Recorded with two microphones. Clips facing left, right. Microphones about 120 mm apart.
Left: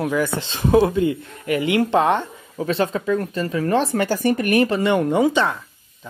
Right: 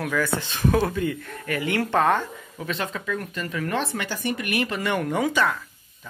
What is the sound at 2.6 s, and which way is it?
Speech, 35° left (ahead or behind).